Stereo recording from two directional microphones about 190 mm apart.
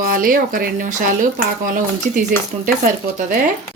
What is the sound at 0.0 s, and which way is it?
Speech, 45° right (ahead or behind).